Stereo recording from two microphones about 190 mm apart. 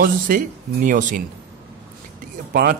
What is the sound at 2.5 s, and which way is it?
Speech, 55° right (ahead or behind).